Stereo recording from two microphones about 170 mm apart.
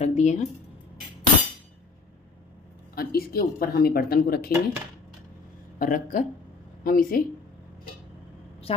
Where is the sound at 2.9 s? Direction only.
60° left (ahead or behind).